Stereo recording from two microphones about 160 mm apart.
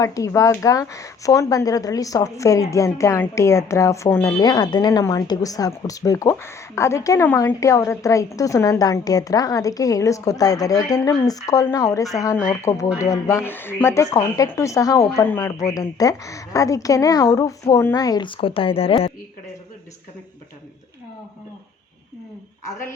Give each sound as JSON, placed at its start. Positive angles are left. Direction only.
{"t": 0.0, "sound": "speech", "side_deg": 20}
{"t": 22.6, "sound": "speech", "side_deg": 20}